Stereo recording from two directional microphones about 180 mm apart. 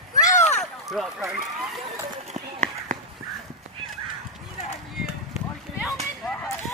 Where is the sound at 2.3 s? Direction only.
45° right (ahead or behind).